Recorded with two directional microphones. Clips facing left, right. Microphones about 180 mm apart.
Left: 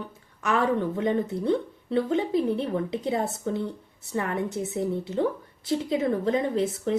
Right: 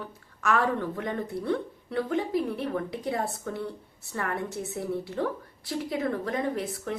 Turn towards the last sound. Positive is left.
turn(degrees=25)  # may be behind; listen again after turning